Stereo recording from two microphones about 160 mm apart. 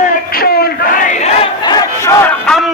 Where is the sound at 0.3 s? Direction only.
70° left (ahead or behind).